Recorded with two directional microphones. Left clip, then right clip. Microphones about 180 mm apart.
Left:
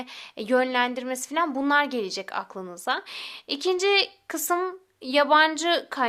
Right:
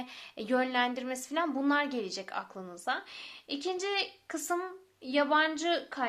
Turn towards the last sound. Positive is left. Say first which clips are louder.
# left 7 dB
turn(degrees=40)  # may be behind; listen again after turning